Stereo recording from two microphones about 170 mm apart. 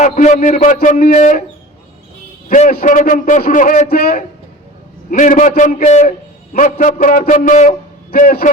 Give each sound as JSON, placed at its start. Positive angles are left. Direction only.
{"t": 0.0, "sound": "a man's voice", "side_deg": 45}
{"t": 2.5, "sound": "a man's voice", "side_deg": 50}
{"t": 5.1, "sound": "a man's voice", "side_deg": 50}